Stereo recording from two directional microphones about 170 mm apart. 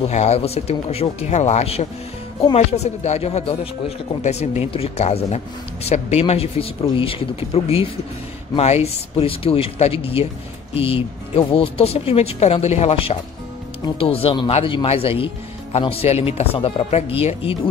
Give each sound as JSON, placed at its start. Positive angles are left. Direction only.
{"t": 0.0, "sound": "speech", "side_deg": 40}